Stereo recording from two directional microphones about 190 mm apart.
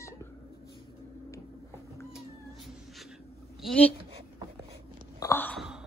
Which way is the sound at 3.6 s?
5° left (ahead or behind).